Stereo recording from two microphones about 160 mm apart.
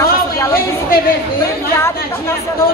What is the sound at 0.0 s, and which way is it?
Chatter, 20° left (ahead or behind).